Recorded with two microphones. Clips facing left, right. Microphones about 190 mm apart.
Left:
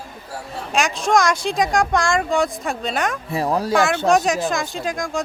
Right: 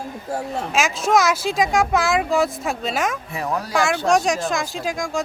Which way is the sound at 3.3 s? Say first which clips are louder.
Left 4 dB; 30° left (ahead or behind).